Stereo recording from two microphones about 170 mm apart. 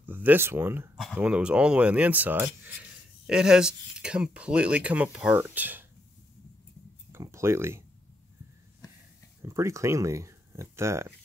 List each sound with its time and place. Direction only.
0.0 s speech: 10° right (ahead or behind)
0.9 s speech: centre (ahead or behind)
7.1 s a sound: 15° right (ahead or behind)
9.4 s speech: 15° right (ahead or behind)